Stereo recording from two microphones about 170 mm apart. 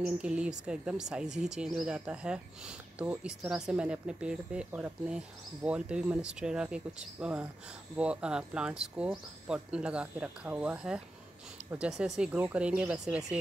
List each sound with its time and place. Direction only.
0.0 s speech: 5° right (ahead or behind)